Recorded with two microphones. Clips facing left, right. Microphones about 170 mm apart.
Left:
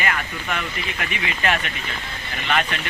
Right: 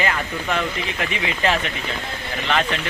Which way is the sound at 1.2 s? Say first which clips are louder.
Right 2 dB; 25° right (ahead or behind).